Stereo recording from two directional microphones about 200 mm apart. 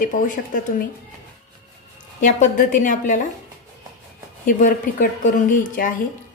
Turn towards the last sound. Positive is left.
turn(degrees=40)  # may be behind; listen again after turning